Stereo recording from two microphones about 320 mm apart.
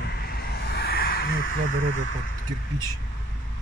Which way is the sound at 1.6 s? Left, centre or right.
Right.